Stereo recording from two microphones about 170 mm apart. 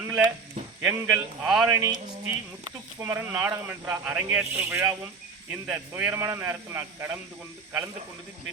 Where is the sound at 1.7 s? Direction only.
20° right (ahead or behind).